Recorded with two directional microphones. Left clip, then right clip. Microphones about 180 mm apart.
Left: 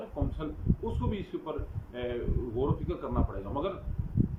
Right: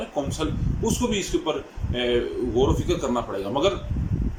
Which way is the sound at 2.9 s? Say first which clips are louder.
Right 10 dB; 10° right (ahead or behind).